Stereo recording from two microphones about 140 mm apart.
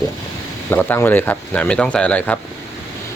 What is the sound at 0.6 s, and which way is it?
Speech, 15° left (ahead or behind).